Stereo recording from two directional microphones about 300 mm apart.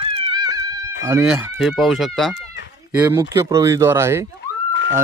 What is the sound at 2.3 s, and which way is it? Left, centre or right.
Chicken, left.